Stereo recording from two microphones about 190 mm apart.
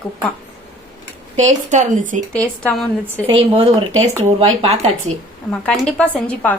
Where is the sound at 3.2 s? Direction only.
30° right (ahead or behind).